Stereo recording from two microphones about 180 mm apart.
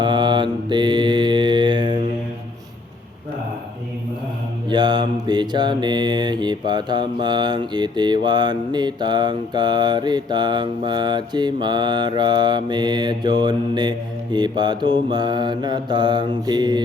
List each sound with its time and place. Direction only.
0.0 s mantra: 25° right (ahead or behind)
4.7 s mantra: 25° right (ahead or behind)